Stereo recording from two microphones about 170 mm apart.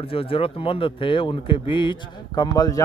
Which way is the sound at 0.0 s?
35° left (ahead or behind).